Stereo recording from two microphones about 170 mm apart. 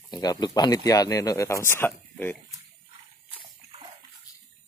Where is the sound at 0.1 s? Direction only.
25° left (ahead or behind).